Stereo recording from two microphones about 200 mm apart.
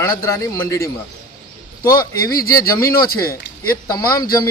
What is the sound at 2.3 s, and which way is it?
Speech, 45° left (ahead or behind).